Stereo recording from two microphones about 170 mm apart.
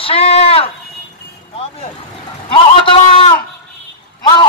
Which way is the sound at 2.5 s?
30° left (ahead or behind).